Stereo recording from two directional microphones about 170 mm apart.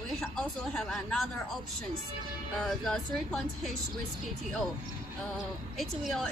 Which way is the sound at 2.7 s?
Centre (ahead or behind).